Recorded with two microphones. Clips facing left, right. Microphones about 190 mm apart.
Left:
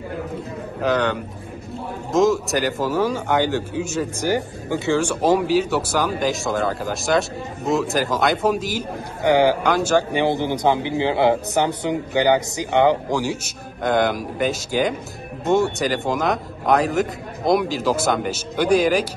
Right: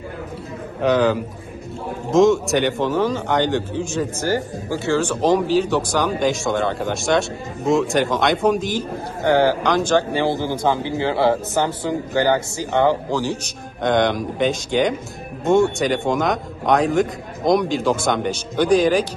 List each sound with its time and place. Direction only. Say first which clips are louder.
0.7 s speech: right 4 dB; centre (ahead or behind)
4.3 s speech: even; 20° left (ahead or behind); by 8.8 s 5° left (ahead or behind)
9.2 s a man's voice: even; 15° left (ahead or behind)